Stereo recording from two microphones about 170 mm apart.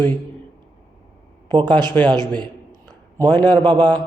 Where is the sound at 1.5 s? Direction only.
25° right (ahead or behind).